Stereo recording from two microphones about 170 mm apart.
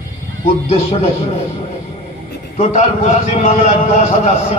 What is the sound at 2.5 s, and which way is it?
A man's voice, 45° left (ahead or behind).